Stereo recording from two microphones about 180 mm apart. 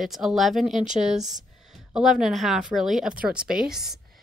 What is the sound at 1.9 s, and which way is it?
Speech, 5° right (ahead or behind).